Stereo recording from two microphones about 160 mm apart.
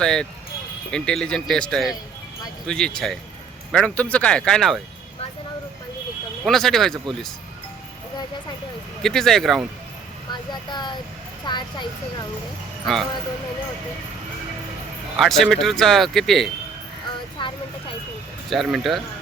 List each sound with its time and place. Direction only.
0.0 s speech: 5° left (ahead or behind)
6.4 s speech: centre (ahead or behind)
9.0 s speech: 5° left (ahead or behind)
10.5 s speech: 30° left (ahead or behind)
12.8 s speech: centre (ahead or behind)
15.1 s speech: centre (ahead or behind)
17.4 s vehicle: 30° left (ahead or behind)
18.5 s speech: centre (ahead or behind)